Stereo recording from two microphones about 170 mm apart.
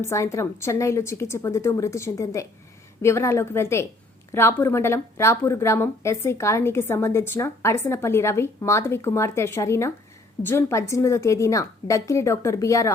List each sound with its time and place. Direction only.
0.0 s speech: 15° left (ahead or behind)